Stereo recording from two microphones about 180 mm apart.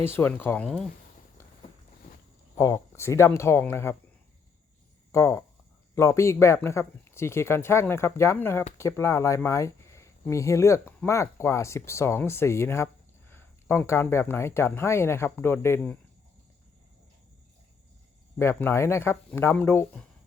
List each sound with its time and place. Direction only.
0.0 s speech: 10° left (ahead or behind)
2.6 s speech: 15° left (ahead or behind)
5.1 s speech: 15° left (ahead or behind)
18.3 s speech: 15° left (ahead or behind)